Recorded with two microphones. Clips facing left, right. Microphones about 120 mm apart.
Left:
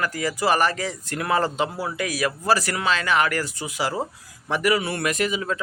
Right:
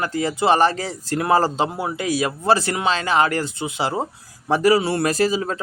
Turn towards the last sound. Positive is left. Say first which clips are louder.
# right 4 dB
turn(degrees=-35)  # may be behind; listen again after turning